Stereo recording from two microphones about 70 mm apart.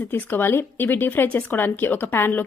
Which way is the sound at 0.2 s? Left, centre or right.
Left.